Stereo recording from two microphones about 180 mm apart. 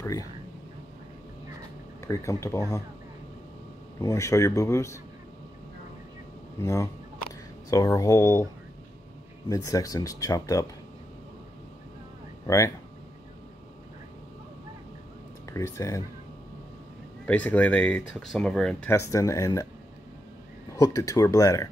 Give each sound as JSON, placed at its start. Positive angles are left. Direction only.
{"t": 0.0, "sound": "speech", "side_deg": 20}
{"t": 2.0, "sound": "speech", "side_deg": 15}
{"t": 4.0, "sound": "speech", "side_deg": 15}
{"t": 6.6, "sound": "speech", "side_deg": 15}
{"t": 9.5, "sound": "speech", "side_deg": 20}
{"t": 12.4, "sound": "speech", "side_deg": 15}
{"t": 15.4, "sound": "speech", "side_deg": 15}
{"t": 17.3, "sound": "speech", "side_deg": 10}
{"t": 20.7, "sound": "speech", "side_deg": 20}